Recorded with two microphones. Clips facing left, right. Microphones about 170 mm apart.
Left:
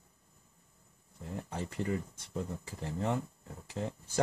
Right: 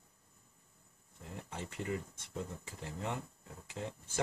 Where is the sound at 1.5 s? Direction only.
35° left (ahead or behind).